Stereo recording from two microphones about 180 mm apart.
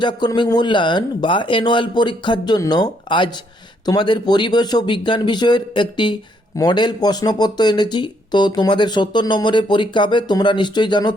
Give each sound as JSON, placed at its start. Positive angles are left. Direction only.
{"t": 0.0, "sound": "speech", "side_deg": 25}